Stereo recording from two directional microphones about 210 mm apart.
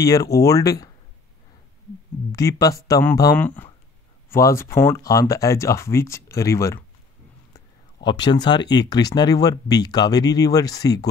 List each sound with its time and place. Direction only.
0.0 s speech: 15° left (ahead or behind)
2.3 s speech: 15° left (ahead or behind)